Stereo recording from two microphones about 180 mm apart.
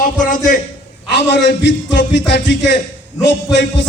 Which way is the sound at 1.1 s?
75° left (ahead or behind).